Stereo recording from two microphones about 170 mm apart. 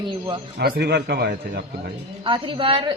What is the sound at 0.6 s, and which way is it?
Speech, 75° right (ahead or behind).